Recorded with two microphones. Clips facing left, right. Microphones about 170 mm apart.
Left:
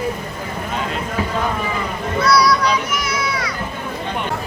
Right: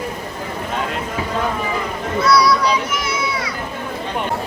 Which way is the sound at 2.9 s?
25° right (ahead or behind).